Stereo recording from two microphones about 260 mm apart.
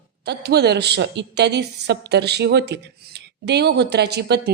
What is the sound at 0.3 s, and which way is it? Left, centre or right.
A woman's voice, right.